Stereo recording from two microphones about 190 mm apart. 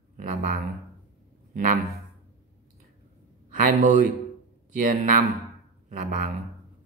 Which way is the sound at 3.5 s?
45° right (ahead or behind).